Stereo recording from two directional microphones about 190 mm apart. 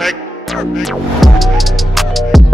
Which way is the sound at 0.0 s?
Centre (ahead or behind).